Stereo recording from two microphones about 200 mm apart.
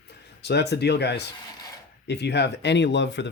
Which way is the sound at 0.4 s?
55° left (ahead or behind).